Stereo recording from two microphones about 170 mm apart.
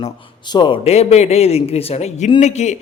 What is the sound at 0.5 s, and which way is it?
A man's voice, 30° left (ahead or behind).